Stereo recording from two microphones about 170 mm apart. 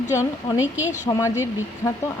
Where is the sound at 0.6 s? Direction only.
10° right (ahead or behind).